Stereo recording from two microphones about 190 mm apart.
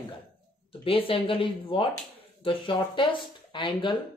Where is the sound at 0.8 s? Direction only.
30° left (ahead or behind).